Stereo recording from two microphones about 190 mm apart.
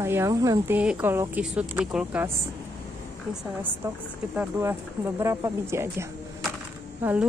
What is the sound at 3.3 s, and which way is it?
Speech, 10° right (ahead or behind).